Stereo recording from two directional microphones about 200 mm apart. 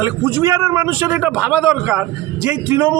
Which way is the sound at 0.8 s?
10° right (ahead or behind).